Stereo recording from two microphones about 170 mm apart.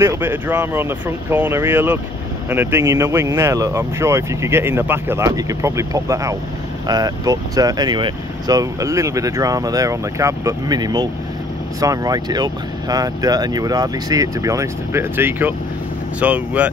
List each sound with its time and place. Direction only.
0.0 s speech: 15° right (ahead or behind)